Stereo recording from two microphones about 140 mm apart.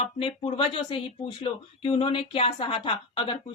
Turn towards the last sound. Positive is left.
turn(degrees=40)  # may be behind; listen again after turning